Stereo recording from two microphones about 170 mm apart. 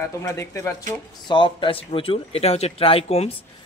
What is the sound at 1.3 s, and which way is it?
A man's voice, 30° left (ahead or behind).